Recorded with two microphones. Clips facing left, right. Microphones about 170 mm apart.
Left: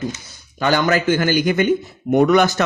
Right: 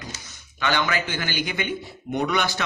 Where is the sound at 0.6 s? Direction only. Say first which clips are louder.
Left 8 dB; 40° left (ahead or behind).